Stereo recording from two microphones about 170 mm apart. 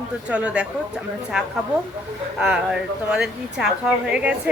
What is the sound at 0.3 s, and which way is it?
Speech, 5° right (ahead or behind).